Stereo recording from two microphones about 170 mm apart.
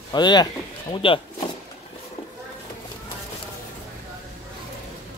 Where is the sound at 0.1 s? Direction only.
25° left (ahead or behind).